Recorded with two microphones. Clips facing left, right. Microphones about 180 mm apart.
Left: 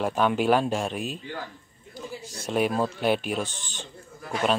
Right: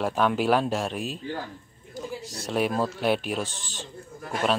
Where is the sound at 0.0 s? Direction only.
Centre (ahead or behind).